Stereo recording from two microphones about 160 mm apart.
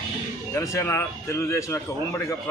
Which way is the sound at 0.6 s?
15° left (ahead or behind).